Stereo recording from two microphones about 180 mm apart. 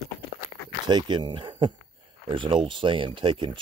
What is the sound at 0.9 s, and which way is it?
Speech, 25° right (ahead or behind).